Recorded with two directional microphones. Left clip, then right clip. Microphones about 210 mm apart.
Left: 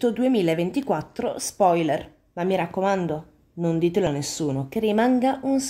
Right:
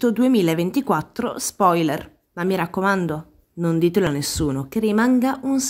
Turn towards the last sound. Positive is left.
turn(degrees=-10)  # may be behind; listen again after turning